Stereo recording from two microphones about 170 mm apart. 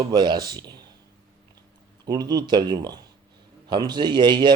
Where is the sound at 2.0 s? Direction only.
25° right (ahead or behind).